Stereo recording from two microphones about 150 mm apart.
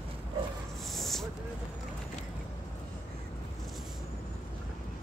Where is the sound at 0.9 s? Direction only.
Centre (ahead or behind).